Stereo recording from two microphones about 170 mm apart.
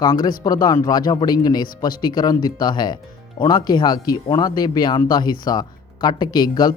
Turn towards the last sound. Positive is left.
turn(degrees=25)  # may be behind; listen again after turning